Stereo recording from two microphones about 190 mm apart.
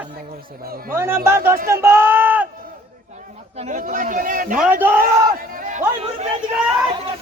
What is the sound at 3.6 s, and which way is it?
Speech, 40° right (ahead or behind).